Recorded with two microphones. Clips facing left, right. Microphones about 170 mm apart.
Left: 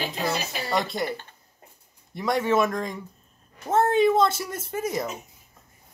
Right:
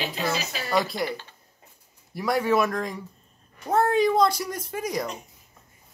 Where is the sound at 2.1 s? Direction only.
Centre (ahead or behind).